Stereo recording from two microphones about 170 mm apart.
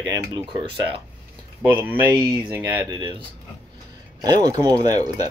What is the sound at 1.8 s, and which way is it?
Speech, 10° right (ahead or behind).